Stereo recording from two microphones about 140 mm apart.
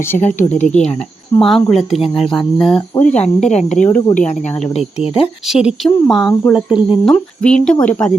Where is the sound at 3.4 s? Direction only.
55° left (ahead or behind).